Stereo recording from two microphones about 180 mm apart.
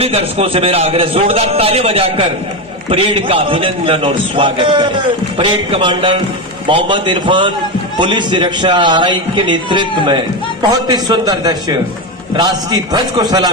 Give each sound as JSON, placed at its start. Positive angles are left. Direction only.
{"t": 0.0, "sound": "a man's voice", "side_deg": -35}